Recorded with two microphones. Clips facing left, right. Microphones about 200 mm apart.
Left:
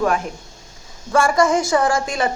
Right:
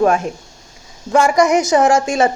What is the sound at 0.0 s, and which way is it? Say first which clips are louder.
A woman's voice: right 5 dB; 25° right (ahead or behind).